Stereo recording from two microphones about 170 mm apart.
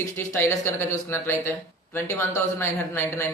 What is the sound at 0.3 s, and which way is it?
A man's voice, 15° left (ahead or behind).